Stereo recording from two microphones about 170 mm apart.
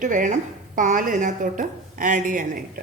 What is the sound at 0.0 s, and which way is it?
A woman's voice, 50° right (ahead or behind).